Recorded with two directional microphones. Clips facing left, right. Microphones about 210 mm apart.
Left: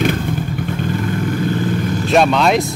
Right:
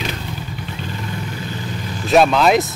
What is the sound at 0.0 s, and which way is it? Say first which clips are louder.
Vehicle: left 9 dB; 50° left (ahead or behind).